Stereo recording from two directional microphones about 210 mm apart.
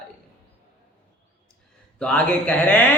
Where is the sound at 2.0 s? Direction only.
5° left (ahead or behind).